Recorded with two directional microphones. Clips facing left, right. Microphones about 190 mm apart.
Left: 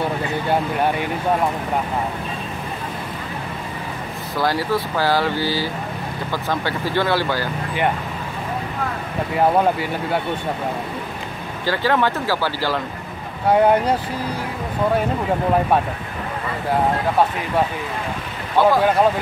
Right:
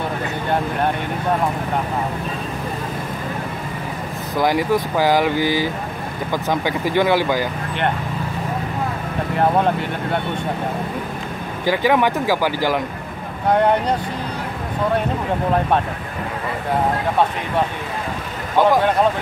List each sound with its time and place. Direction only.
0.5 s speech: 5° left (ahead or behind)
4.4 s speech: 15° right (ahead or behind)
9.3 s speech: 5° left (ahead or behind)
11.6 s speech: 15° right (ahead or behind)
13.5 s speech: 5° left (ahead or behind)
18.6 s speech: 15° right (ahead or behind)